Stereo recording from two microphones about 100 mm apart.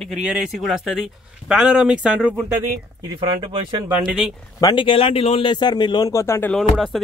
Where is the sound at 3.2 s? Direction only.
60° right (ahead or behind).